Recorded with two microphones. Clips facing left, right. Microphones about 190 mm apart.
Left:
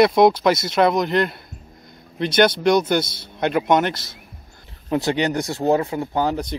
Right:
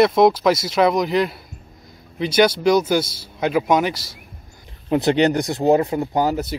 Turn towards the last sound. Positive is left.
turn(degrees=-5)  # may be behind; listen again after turning